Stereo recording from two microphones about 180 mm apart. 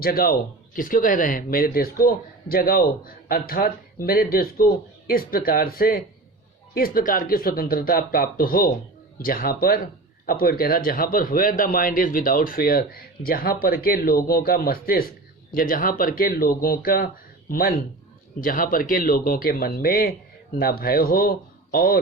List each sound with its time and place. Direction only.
0.0 s speech: 55° left (ahead or behind)